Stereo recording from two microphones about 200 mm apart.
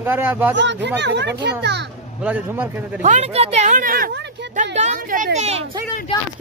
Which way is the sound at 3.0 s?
35° right (ahead or behind).